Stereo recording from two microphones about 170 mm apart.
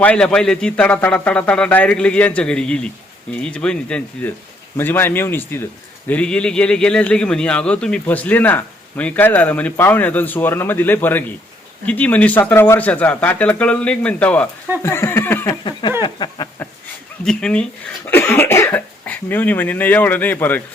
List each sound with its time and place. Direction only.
0.0 s speech: 5° left (ahead or behind)
16.0 s a sound: 25° left (ahead or behind)
17.2 s speech: 5° left (ahead or behind)